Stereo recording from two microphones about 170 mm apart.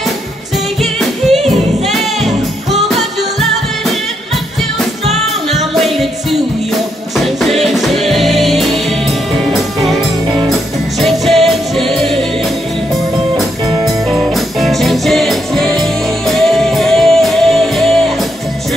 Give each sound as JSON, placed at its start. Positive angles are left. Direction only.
{"t": 1.9, "sound": "music", "side_deg": 0}
{"t": 5.5, "sound": "music", "side_deg": 0}
{"t": 7.2, "sound": "music", "side_deg": 0}
{"t": 10.2, "sound": "music", "side_deg": -30}
{"t": 11.0, "sound": "music", "side_deg": 0}
{"t": 13.8, "sound": "music", "side_deg": 0}